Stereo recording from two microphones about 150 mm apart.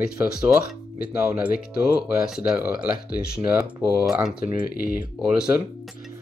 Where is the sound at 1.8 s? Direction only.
5° right (ahead or behind).